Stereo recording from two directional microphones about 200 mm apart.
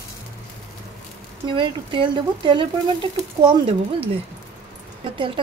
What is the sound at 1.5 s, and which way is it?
Speech, 25° right (ahead or behind).